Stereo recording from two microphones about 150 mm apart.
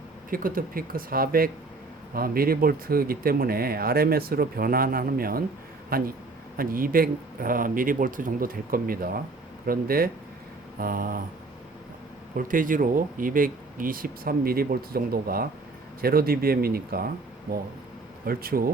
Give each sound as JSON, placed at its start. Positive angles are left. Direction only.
{"t": 0.3, "sound": "speech", "side_deg": -70}
{"t": 12.4, "sound": "speech", "side_deg": -65}
{"t": 18.3, "sound": "speech", "side_deg": -80}